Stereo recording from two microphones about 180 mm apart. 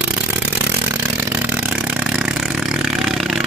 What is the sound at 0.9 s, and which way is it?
Vehicle, 10° right (ahead or behind).